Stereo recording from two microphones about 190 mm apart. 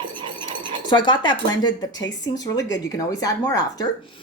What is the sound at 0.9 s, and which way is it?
Speech, 25° left (ahead or behind).